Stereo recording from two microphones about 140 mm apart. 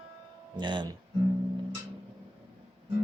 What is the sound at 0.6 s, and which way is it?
Music, 35° right (ahead or behind).